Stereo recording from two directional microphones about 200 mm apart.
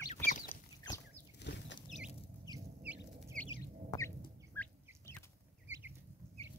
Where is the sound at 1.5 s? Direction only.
60° left (ahead or behind).